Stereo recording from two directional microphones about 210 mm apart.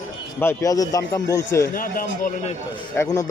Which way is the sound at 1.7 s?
40° left (ahead or behind).